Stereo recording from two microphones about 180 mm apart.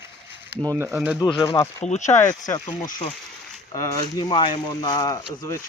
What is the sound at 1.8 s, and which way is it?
Speech, 40° left (ahead or behind).